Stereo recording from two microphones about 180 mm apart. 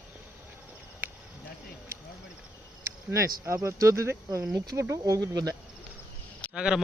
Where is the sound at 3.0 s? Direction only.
15° right (ahead or behind).